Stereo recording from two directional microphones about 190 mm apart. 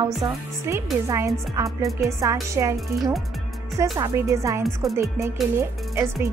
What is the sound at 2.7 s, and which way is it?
Speech, centre (ahead or behind).